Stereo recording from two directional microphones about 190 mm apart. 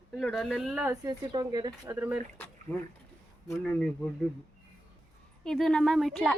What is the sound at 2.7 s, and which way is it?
A woman's voice, 5° left (ahead or behind).